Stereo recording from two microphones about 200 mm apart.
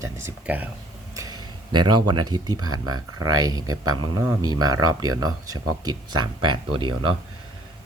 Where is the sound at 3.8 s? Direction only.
90° right.